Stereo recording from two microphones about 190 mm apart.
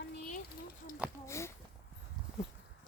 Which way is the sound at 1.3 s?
15° left (ahead or behind).